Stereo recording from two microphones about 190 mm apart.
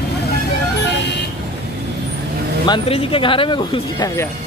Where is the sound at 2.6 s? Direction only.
25° left (ahead or behind).